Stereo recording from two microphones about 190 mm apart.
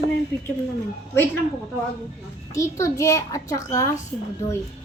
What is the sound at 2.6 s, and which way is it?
A child's voice, 15° left (ahead or behind).